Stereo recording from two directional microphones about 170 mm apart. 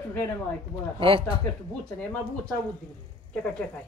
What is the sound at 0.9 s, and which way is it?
Speech, 30° right (ahead or behind).